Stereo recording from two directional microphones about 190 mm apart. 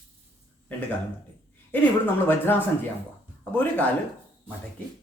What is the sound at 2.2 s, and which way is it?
Speech, 10° left (ahead or behind).